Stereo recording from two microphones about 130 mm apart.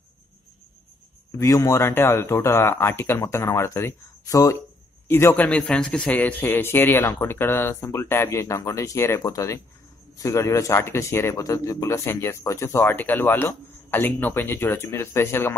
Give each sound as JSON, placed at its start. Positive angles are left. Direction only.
{"t": 1.4, "sound": "speech", "side_deg": 20}